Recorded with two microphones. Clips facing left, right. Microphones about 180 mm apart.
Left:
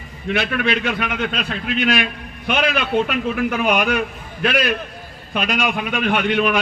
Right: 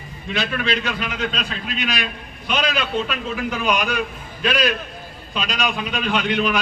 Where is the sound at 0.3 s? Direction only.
60° left (ahead or behind).